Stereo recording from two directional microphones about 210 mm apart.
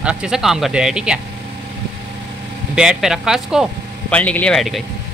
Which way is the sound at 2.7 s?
5° right (ahead or behind).